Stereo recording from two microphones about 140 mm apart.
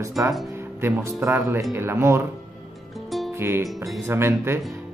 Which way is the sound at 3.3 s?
15° right (ahead or behind).